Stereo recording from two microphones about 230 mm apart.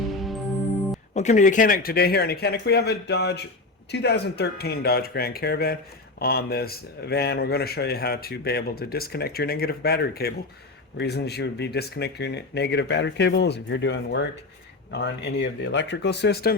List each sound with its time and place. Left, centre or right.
0.2 s music: centre
1.1 s speech: left